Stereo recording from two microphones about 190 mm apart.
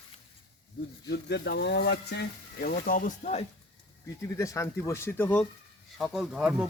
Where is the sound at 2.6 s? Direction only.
45° left (ahead or behind).